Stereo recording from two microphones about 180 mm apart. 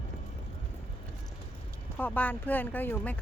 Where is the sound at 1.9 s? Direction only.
10° left (ahead or behind).